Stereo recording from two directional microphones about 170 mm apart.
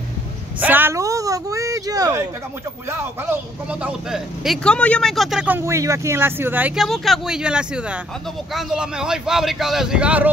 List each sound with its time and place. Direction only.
0.6 s speech: 10° right (ahead or behind)
3.8 s speech: centre (ahead or behind)